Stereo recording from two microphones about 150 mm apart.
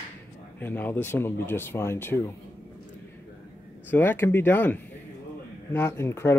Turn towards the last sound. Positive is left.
turn(degrees=15)  # may be behind; listen again after turning